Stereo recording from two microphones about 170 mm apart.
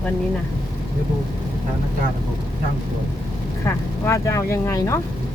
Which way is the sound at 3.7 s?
15° left (ahead or behind).